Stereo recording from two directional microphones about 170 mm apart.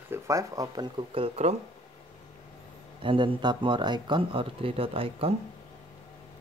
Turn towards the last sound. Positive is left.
turn(degrees=-35)  # may be behind; listen again after turning